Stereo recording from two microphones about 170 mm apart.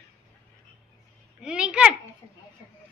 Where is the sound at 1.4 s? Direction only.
5° right (ahead or behind).